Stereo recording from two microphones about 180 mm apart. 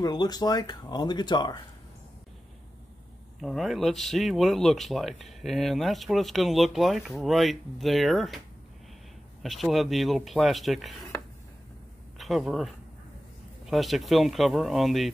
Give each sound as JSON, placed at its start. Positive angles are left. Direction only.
{"t": 0.0, "sound": "speech", "side_deg": 20}
{"t": 3.3, "sound": "speech", "side_deg": 0}
{"t": 9.4, "sound": "speech", "side_deg": 0}
{"t": 12.2, "sound": "speech", "side_deg": 0}